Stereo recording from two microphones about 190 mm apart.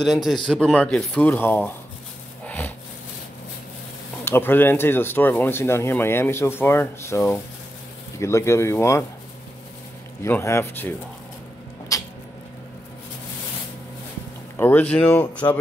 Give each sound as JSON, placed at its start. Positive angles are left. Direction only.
{"t": 0.0, "sound": "speech", "side_deg": 0}
{"t": 2.4, "sound": "a sound", "side_deg": 10}
{"t": 4.2, "sound": "speech", "side_deg": 10}
{"t": 10.2, "sound": "speech", "side_deg": 15}
{"t": 11.9, "sound": "a sound", "side_deg": 15}
{"t": 14.6, "sound": "speech", "side_deg": 10}